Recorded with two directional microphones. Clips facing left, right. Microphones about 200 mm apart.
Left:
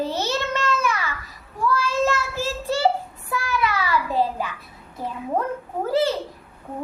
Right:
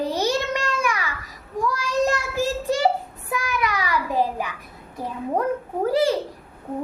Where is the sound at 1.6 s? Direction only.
15° right (ahead or behind).